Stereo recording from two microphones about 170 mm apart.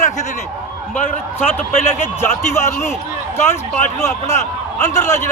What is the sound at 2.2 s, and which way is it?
Speech, 15° left (ahead or behind).